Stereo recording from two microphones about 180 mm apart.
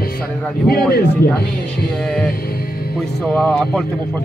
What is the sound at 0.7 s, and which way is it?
Speech, 60° left (ahead or behind).